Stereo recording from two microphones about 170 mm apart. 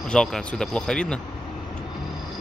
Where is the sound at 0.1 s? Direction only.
5° left (ahead or behind).